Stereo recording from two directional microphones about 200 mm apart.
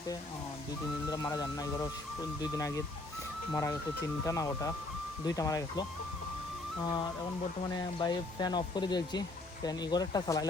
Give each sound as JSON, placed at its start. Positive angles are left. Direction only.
{"t": 1.1, "sound": "speech", "side_deg": 20}
{"t": 7.7, "sound": "speech", "side_deg": 20}